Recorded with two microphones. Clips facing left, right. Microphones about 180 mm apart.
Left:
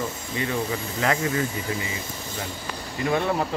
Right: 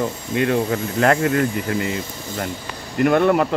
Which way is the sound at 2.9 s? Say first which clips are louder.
Right 8 dB; 60° right (ahead or behind).